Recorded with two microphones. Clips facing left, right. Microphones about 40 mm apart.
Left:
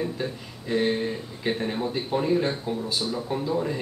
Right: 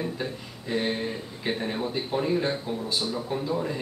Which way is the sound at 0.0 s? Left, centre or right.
Centre.